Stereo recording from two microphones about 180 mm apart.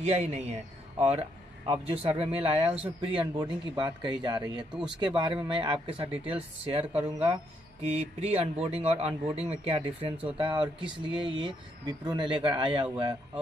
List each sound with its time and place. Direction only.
0.0 s a man's voice: 40° right (ahead or behind)